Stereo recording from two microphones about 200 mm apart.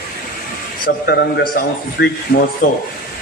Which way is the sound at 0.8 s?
55° left (ahead or behind).